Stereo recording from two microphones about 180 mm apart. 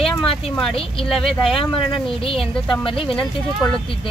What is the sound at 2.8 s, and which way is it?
Speech, 30° left (ahead or behind).